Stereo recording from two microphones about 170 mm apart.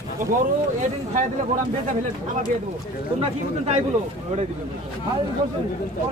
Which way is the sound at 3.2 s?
35° right (ahead or behind).